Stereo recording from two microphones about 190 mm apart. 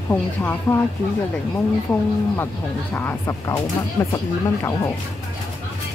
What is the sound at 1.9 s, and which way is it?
Speech, 10° left (ahead or behind).